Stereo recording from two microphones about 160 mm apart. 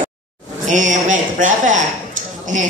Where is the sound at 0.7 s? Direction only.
50° right (ahead or behind).